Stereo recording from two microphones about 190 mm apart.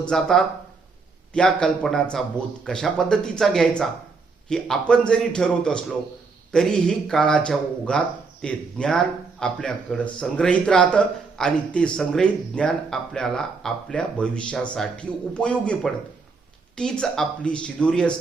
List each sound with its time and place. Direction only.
0.0 s speech: 5° left (ahead or behind)